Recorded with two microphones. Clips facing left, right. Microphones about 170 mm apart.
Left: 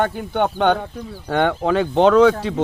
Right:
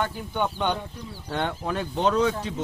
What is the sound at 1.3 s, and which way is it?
Speech, 90° left.